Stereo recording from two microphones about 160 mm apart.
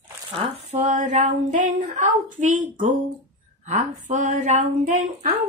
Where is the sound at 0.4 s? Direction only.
50° right (ahead or behind).